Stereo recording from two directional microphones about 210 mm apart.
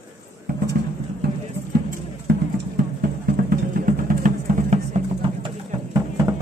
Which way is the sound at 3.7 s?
40° right (ahead or behind).